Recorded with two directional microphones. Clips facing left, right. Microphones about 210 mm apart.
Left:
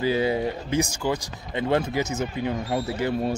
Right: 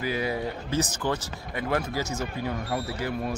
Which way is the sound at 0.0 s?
25° left (ahead or behind).